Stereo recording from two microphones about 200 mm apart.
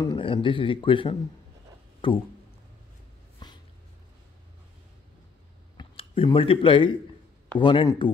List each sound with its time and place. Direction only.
0.0 s speech: 25° left (ahead or behind)
3.4 s dog: 20° left (ahead or behind)
5.8 s speech: 25° left (ahead or behind)